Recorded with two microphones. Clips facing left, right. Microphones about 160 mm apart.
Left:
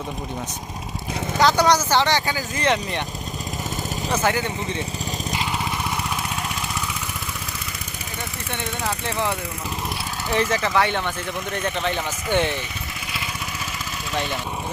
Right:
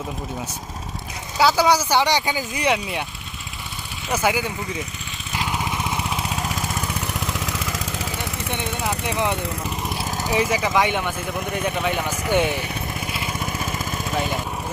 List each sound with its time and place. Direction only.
1.4 s speech: 5° right (ahead or behind)
4.1 s speech: 10° right (ahead or behind)
8.5 s speech: 15° right (ahead or behind)